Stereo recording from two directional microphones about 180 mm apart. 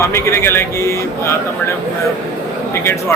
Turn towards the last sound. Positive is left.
turn(degrees=15)  # may be behind; listen again after turning